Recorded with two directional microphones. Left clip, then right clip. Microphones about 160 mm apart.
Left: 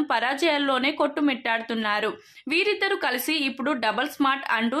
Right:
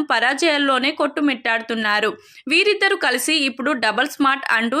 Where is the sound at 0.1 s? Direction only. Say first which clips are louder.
Right 7 dB; 20° right (ahead or behind).